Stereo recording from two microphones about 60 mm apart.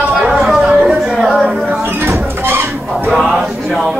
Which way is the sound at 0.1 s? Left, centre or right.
Centre.